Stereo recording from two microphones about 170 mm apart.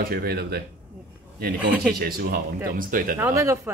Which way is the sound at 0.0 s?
65° right (ahead or behind).